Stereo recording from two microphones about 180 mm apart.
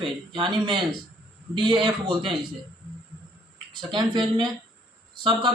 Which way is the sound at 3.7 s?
25° right (ahead or behind).